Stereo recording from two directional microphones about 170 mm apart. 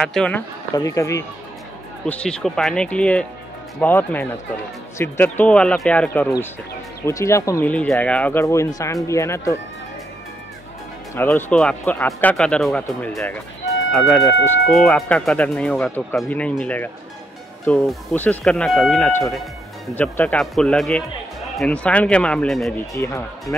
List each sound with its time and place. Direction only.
0.0 s speech: 5° left (ahead or behind)
0.7 s speech: 20° left (ahead or behind)
2.0 s speech: 5° left (ahead or behind)
11.1 s speech: 10° left (ahead or behind)
22.9 s speech: 20° left (ahead or behind)